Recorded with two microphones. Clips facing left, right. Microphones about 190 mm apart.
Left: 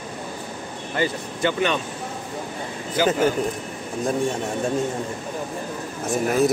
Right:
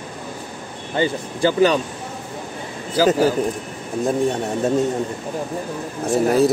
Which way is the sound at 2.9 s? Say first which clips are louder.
Right 4 dB; 35° right (ahead or behind).